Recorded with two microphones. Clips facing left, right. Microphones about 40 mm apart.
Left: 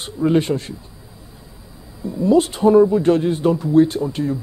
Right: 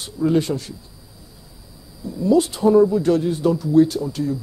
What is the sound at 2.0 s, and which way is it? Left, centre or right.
Speech, left.